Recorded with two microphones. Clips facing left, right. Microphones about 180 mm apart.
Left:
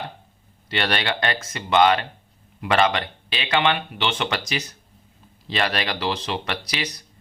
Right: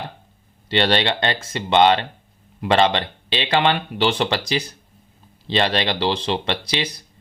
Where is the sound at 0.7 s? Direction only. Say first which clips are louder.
Right 5 dB; 25° right (ahead or behind).